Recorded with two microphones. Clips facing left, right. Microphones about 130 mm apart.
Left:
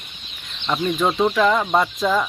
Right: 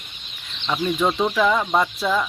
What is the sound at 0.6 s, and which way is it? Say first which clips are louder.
Speech: left 1 dB; 5° left (ahead or behind).